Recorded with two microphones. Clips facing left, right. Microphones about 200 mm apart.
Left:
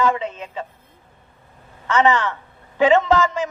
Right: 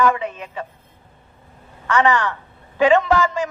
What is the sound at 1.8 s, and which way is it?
A woman's voice, 20° left (ahead or behind).